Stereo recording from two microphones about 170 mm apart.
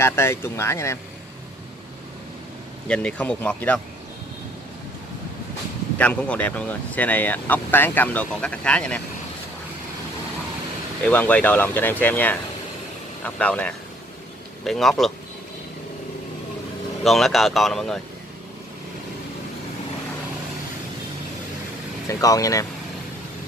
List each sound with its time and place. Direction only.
0.0 s speech: 15° left (ahead or behind)
2.9 s speech: 5° left (ahead or behind)
5.9 s speech: 5° left (ahead or behind)
11.1 s speech: 10° left (ahead or behind)
17.0 s speech: centre (ahead or behind)
22.0 s speech: 20° left (ahead or behind)